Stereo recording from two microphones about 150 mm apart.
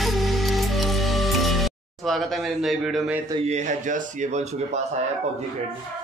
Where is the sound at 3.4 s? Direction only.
50° right (ahead or behind).